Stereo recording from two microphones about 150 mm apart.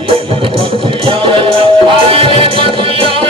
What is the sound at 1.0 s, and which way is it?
Music, 35° right (ahead or behind).